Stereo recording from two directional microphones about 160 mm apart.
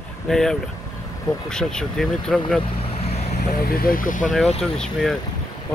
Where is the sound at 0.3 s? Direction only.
5° left (ahead or behind).